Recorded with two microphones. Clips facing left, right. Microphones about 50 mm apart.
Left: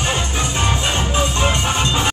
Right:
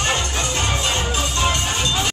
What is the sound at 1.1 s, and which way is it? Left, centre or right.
Music, left.